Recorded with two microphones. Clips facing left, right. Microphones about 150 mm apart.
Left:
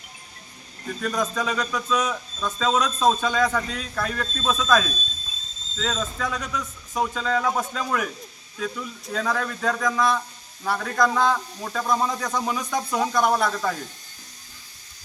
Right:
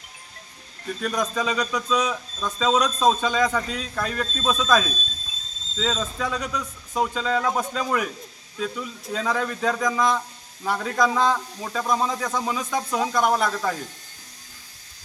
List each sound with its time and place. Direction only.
1.0 s a man's voice: centre (ahead or behind)
6.9 s a man's voice: 5° right (ahead or behind)
9.8 s a man's voice: 15° right (ahead or behind)